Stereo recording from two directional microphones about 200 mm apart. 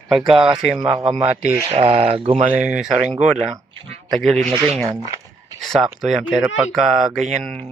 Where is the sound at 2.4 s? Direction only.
5° right (ahead or behind).